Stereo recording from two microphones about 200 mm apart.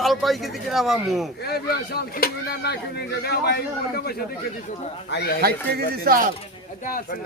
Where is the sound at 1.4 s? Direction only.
50° left (ahead or behind).